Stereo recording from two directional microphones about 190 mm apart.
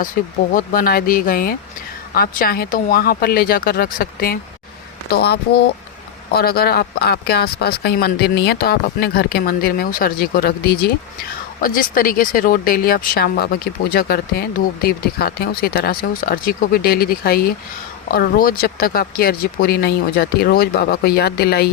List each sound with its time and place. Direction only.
0.0 s speech: 45° left (ahead or behind)